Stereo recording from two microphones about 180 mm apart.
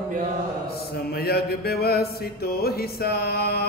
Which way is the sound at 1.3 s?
60° left (ahead or behind).